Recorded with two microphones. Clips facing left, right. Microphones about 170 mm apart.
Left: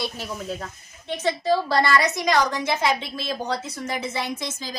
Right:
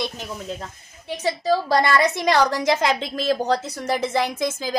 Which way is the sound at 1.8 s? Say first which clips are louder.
Right 2 dB; 25° right (ahead or behind).